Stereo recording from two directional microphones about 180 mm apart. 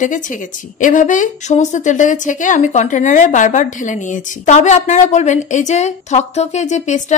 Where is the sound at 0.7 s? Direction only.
45° left (ahead or behind).